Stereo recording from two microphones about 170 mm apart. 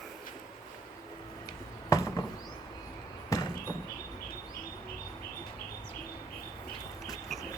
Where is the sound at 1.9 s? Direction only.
20° left (ahead or behind).